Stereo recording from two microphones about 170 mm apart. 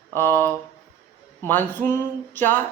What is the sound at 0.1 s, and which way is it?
Speech, 15° left (ahead or behind).